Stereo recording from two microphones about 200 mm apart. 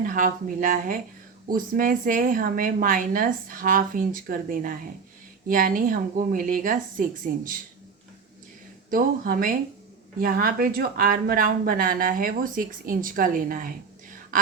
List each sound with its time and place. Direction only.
0.0 s speech: 45° right (ahead or behind)
8.9 s speech: 45° right (ahead or behind)